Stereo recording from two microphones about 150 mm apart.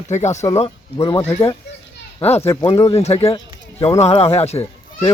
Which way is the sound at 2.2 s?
45° left (ahead or behind).